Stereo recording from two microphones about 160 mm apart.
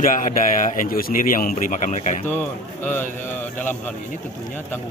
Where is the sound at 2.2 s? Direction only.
10° left (ahead or behind).